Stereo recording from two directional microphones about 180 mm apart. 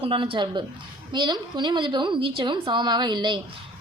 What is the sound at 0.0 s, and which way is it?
A woman's voice, 30° right (ahead or behind).